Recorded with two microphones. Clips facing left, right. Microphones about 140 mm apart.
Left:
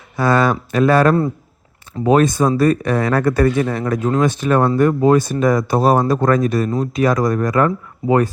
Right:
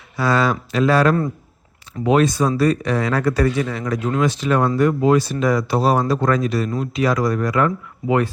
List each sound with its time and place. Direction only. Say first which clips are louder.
0.2 s speech: left 3 dB; 50° left (ahead or behind)